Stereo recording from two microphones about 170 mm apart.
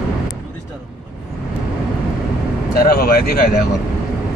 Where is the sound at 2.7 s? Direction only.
60° left (ahead or behind).